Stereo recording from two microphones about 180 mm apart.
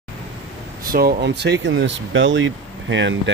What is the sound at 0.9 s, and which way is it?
Speech, 65° right (ahead or behind).